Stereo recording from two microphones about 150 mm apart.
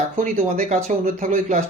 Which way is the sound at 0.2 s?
55° right (ahead or behind).